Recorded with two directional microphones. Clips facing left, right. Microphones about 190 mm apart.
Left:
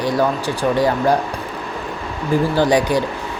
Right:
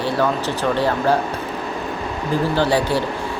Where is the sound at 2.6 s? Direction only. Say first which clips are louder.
Left 3 dB; 15° left (ahead or behind).